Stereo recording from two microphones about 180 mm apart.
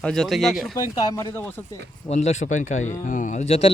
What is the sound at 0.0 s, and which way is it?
Speech, 5° left (ahead or behind).